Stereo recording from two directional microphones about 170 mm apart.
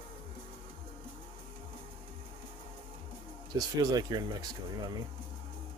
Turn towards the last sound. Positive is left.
turn(degrees=-25)  # may be behind; listen again after turning